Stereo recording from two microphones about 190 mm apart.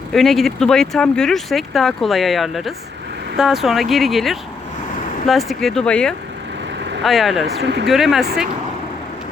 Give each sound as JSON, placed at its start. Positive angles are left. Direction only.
{"t": 0.1, "sound": "speech", "side_deg": 0}
{"t": 7.6, "sound": "speech", "side_deg": -60}
{"t": 7.9, "sound": "speech", "side_deg": 0}